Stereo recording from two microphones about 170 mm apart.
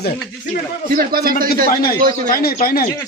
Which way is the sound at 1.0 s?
60° right (ahead or behind).